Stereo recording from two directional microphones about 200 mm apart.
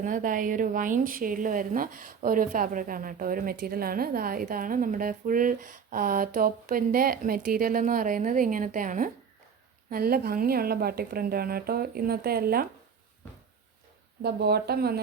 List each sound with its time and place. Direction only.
0.0 s a woman's voice: 40° right (ahead or behind)
14.2 s a woman's voice: 55° right (ahead or behind)